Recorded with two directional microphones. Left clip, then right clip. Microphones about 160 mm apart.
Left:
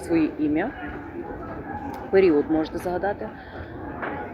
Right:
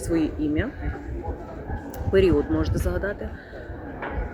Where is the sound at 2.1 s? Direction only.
25° right (ahead or behind).